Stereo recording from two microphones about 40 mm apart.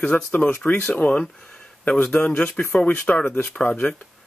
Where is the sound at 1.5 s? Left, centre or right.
Left.